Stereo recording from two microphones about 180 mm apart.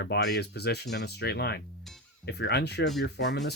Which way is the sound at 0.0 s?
70° left (ahead or behind).